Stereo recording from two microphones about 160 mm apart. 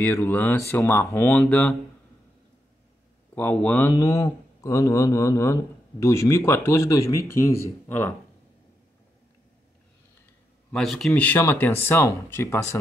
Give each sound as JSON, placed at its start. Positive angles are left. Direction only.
{"t": 0.0, "sound": "speech", "side_deg": 15}
{"t": 3.3, "sound": "speech", "side_deg": 10}
{"t": 10.7, "sound": "speech", "side_deg": 0}